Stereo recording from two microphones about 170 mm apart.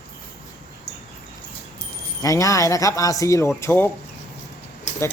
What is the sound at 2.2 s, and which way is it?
Speech, 20° left (ahead or behind).